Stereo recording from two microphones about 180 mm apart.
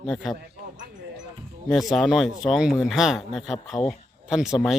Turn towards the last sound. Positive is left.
turn(degrees=0)  # may be behind; listen again after turning